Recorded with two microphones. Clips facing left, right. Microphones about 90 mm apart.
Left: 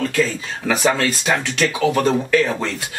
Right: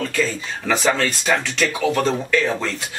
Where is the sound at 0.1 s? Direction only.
5° left (ahead or behind).